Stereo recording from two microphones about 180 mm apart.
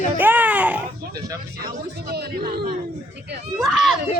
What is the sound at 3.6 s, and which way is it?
Speech, centre (ahead or behind).